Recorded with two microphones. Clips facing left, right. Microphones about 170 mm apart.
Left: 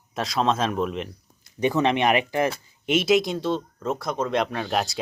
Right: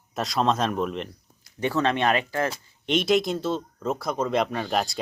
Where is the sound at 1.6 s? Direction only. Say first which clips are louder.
Left 2 dB; 15° left (ahead or behind).